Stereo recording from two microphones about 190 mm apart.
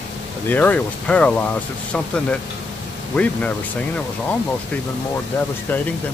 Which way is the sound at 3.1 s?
5° left (ahead or behind).